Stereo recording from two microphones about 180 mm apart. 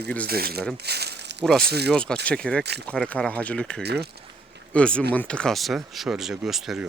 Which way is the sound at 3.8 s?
65° right (ahead or behind).